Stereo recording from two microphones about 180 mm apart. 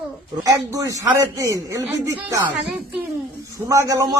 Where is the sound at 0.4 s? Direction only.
20° right (ahead or behind).